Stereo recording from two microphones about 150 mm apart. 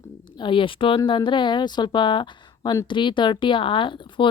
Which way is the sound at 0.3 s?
35° left (ahead or behind).